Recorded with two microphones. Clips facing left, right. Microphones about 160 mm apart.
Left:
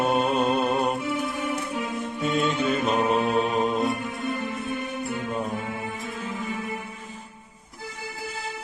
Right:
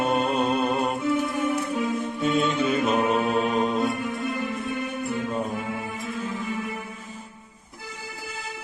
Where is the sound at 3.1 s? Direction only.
40° right (ahead or behind).